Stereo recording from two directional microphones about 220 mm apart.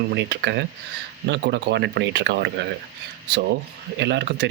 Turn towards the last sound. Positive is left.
turn(degrees=-50)  # may be behind; listen again after turning